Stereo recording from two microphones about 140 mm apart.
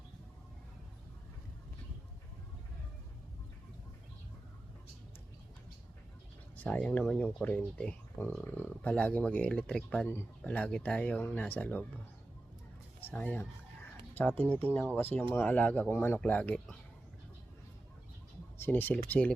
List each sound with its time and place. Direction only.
6.6 s speech: 10° left (ahead or behind)
13.0 s speech: 15° left (ahead or behind)
18.5 s speech: 15° left (ahead or behind)